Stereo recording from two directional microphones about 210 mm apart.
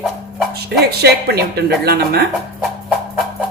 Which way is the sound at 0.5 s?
50° right (ahead or behind).